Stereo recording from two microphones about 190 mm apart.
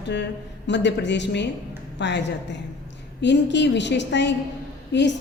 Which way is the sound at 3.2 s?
65° left (ahead or behind).